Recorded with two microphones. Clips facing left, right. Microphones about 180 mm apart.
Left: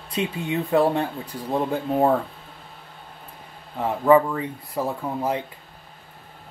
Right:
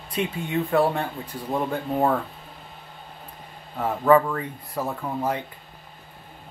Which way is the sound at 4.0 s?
15° left (ahead or behind).